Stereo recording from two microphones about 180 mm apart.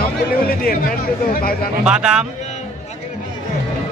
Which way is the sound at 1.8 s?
5° right (ahead or behind).